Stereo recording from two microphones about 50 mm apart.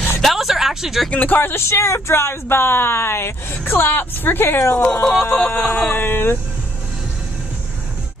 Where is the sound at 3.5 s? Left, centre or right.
Left.